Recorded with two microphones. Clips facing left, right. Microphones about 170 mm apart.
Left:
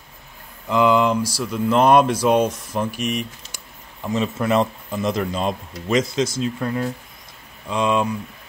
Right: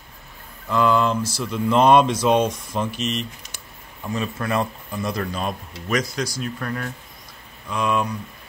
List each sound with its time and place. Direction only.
0.7 s speech: 20° left (ahead or behind)